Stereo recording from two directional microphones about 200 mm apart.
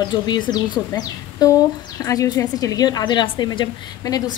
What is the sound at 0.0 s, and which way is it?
Speech, 20° left (ahead or behind).